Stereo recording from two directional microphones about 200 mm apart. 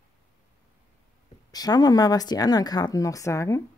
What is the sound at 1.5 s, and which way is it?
Speech, 20° left (ahead or behind).